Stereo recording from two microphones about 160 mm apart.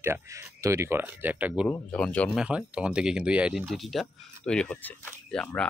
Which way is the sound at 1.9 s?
5° left (ahead or behind).